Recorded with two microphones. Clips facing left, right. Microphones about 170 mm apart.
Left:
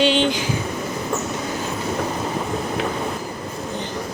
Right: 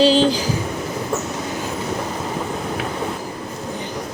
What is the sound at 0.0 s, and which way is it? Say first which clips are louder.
Vehicle: right 4 dB; 35° right (ahead or behind).